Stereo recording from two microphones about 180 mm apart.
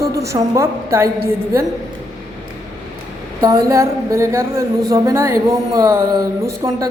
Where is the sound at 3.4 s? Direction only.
20° right (ahead or behind).